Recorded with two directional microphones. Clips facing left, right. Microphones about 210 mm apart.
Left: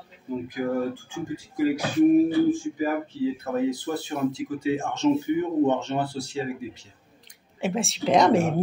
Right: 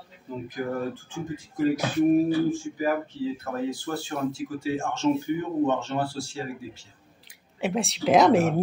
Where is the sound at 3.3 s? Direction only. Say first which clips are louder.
Left 4 dB; 20° left (ahead or behind).